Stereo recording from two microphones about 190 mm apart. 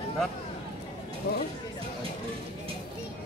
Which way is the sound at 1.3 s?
55° left (ahead or behind).